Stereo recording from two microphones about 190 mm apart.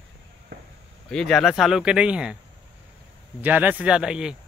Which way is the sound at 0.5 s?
60° right (ahead or behind).